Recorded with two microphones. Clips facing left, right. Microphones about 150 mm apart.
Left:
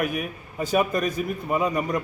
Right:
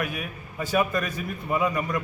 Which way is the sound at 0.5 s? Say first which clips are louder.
Left 2 dB; 20° left (ahead or behind).